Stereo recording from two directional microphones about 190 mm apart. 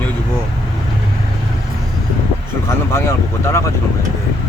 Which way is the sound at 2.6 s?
15° left (ahead or behind).